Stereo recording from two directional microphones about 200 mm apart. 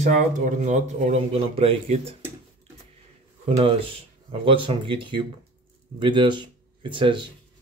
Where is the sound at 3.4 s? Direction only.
25° right (ahead or behind).